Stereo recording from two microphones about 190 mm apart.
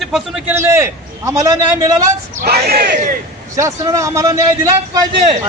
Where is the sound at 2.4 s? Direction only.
55° right (ahead or behind).